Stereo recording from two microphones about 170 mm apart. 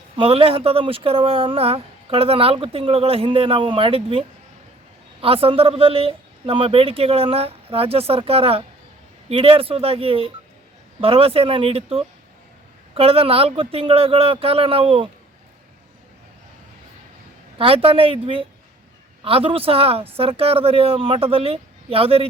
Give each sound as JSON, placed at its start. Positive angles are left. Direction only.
{"t": 0.2, "sound": "speech", "side_deg": -35}
{"t": 17.6, "sound": "speech", "side_deg": -35}